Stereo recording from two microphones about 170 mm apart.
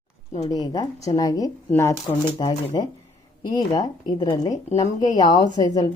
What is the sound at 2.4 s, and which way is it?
Speech, 30° left (ahead or behind).